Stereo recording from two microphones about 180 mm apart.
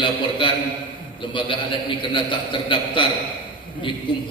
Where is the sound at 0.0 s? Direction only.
25° left (ahead or behind).